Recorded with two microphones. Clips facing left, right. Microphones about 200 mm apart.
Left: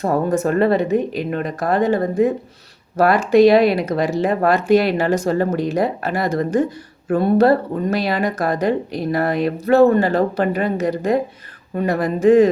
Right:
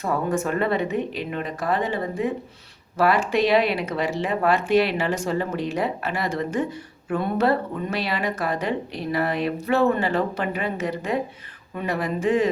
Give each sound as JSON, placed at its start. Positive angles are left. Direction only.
{"t": 0.0, "sound": "speech", "side_deg": 40}